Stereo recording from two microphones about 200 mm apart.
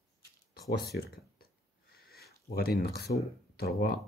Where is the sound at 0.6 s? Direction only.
50° left (ahead or behind).